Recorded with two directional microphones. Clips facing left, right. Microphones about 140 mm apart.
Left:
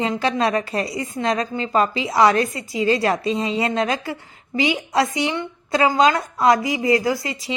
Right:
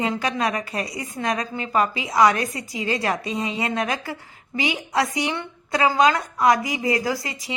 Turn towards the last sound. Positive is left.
turn(degrees=25)  # may be behind; listen again after turning